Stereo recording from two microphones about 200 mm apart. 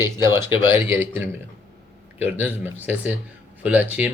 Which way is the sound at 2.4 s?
10° right (ahead or behind).